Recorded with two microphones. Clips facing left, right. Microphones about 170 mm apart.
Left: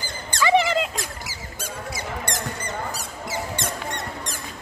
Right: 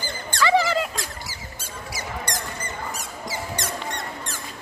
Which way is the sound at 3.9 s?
15° left (ahead or behind).